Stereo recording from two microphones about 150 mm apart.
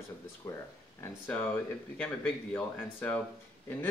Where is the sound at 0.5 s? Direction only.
20° left (ahead or behind).